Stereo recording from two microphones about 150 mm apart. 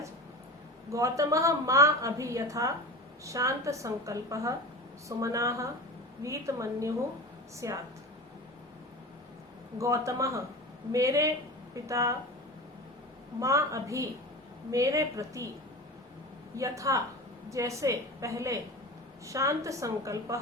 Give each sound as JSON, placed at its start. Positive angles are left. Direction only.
{"t": 0.9, "sound": "a woman's voice", "side_deg": -20}
{"t": 9.7, "sound": "a woman's voice", "side_deg": -20}
{"t": 13.4, "sound": "a woman's voice", "side_deg": -20}
{"t": 16.6, "sound": "a woman's voice", "side_deg": -20}